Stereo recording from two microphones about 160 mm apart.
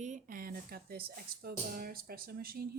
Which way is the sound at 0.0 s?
50° right (ahead or behind).